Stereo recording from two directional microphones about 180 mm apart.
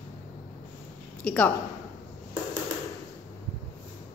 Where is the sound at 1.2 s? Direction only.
10° left (ahead or behind).